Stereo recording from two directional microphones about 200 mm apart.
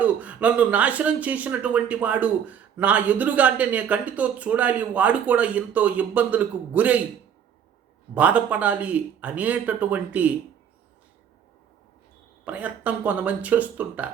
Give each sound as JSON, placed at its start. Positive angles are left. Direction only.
{"t": 0.0, "sound": "speech", "side_deg": -5}
{"t": 8.1, "sound": "speech", "side_deg": -5}
{"t": 12.5, "sound": "speech", "side_deg": -5}